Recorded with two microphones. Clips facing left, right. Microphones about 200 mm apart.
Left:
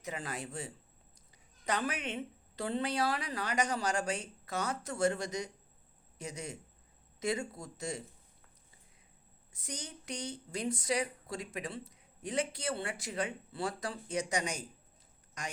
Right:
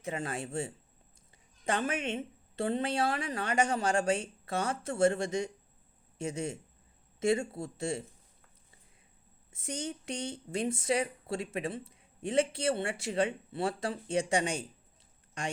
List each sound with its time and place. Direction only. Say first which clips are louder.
0.0 s speech: right 4 dB; 30° right (ahead or behind)
9.5 s speech: right 8 dB; 25° right (ahead or behind)